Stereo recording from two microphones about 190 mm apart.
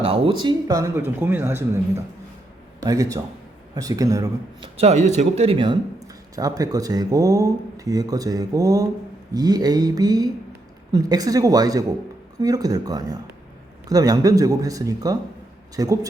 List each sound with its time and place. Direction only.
0.0 s a man's voice: 30° right (ahead or behind)
4.8 s a man's voice: 35° right (ahead or behind); by 16.0 s 20° right (ahead or behind)